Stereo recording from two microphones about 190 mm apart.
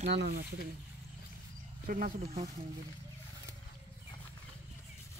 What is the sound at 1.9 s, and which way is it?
Speech, 50° right (ahead or behind).